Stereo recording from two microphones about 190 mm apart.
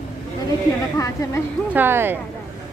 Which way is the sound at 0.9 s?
15° left (ahead or behind).